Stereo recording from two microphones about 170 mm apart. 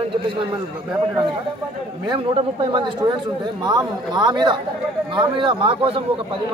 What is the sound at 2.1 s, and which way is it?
A man's voice, 30° right (ahead or behind).